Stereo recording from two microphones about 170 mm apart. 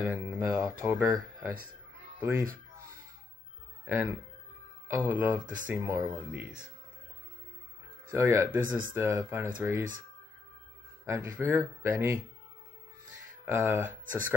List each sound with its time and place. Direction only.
0.0 s speech: 10° right (ahead or behind)
3.8 s speech: 15° right (ahead or behind)
8.1 s speech: 20° right (ahead or behind)
8.4 s speech: 55° right (ahead or behind)
8.9 s speech: 15° right (ahead or behind)
11.1 s speech: 15° right (ahead or behind)
13.5 s speech: 15° right (ahead or behind)